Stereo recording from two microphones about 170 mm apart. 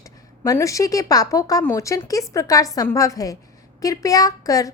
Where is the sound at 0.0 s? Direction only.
20° left (ahead or behind).